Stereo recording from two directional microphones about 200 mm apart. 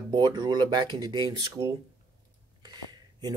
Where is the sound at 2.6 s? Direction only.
20° right (ahead or behind).